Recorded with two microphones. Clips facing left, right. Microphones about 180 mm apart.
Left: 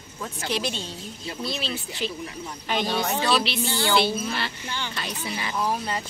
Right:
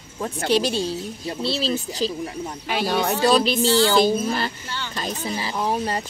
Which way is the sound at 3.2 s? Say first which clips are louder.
Right 6 dB; 40° right (ahead or behind).